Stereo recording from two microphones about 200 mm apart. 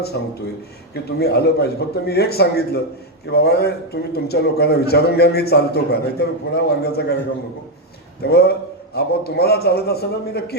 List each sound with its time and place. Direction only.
0.1 s a man's voice: 60° left (ahead or behind)
8.2 s a man's voice: 55° left (ahead or behind)